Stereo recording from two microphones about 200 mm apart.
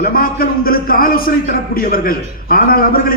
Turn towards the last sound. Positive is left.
turn(degrees=45)  # may be behind; listen again after turning